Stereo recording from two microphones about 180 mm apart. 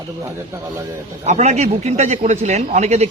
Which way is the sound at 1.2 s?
40° right (ahead or behind).